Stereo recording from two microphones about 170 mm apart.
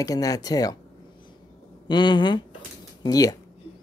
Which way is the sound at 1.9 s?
25° left (ahead or behind).